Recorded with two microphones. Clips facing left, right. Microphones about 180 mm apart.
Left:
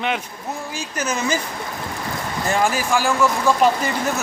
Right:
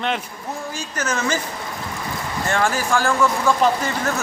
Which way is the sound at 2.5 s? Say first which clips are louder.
Left 1 dB; 10° left (ahead or behind).